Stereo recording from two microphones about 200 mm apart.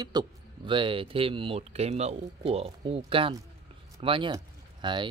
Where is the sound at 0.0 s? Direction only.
20° right (ahead or behind).